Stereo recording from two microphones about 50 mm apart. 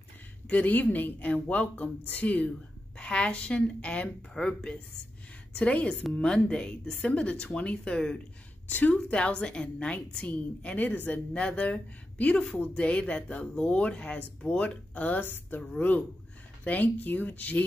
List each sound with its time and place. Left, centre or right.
0.5 s a woman's voice: left
4.3 s speech: centre
5.5 s speech: left
8.6 s a woman's voice: left
9.1 s speech: left
16.6 s a woman's voice: left